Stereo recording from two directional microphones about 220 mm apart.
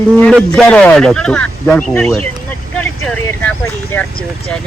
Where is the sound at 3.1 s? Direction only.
5° left (ahead or behind).